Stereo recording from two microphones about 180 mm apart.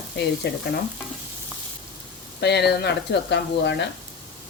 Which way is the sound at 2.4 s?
65° left (ahead or behind).